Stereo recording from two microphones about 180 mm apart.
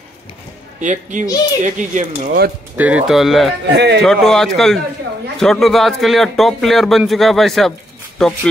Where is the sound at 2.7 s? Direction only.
10° right (ahead or behind).